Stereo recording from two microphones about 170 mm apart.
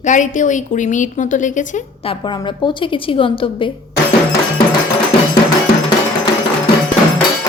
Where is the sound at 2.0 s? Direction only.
30° left (ahead or behind).